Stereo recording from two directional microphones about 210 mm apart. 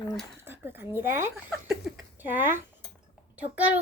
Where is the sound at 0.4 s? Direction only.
10° right (ahead or behind).